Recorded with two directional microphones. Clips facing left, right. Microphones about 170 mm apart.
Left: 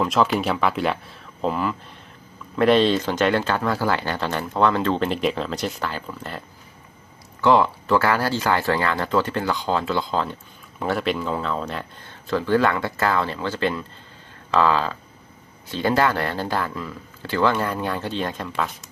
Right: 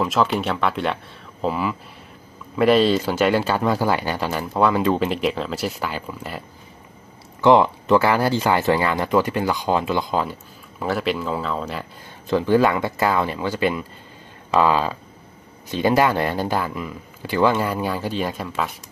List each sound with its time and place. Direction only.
0.0 s speech: centre (ahead or behind)
7.4 s speech: 20° right (ahead or behind)
10.8 s speech: centre (ahead or behind)
12.3 s speech: 15° right (ahead or behind)